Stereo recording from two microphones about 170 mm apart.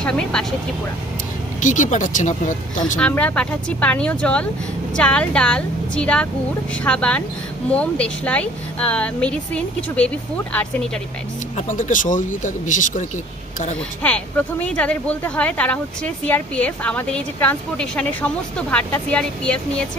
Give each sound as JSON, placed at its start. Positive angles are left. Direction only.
{"t": 0.0, "sound": "speech", "side_deg": 5}
{"t": 1.6, "sound": "speech", "side_deg": 50}
{"t": 3.0, "sound": "speech", "side_deg": 10}
{"t": 11.5, "sound": "speech", "side_deg": 50}
{"t": 14.0, "sound": "speech", "side_deg": 10}